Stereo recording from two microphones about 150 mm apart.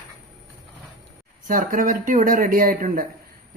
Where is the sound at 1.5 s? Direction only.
65° right (ahead or behind).